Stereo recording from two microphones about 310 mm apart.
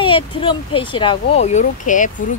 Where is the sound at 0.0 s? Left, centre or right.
Centre.